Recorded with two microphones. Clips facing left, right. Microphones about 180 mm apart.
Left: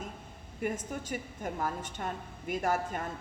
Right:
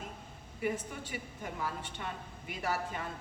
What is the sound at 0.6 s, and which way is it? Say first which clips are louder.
A woman's voice: left 1 dB; 45° left (ahead or behind).